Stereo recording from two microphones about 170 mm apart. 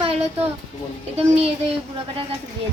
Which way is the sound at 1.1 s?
35° right (ahead or behind).